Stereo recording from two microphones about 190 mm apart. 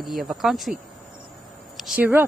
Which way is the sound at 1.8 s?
5° right (ahead or behind).